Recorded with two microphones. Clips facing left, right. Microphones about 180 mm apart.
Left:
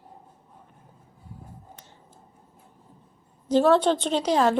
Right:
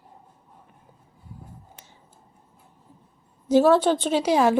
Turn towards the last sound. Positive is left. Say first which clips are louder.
# right 2 dB
turn(degrees=-10)  # may be behind; listen again after turning